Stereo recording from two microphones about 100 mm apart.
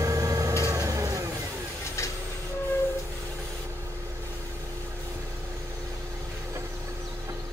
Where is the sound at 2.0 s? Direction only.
30° left (ahead or behind).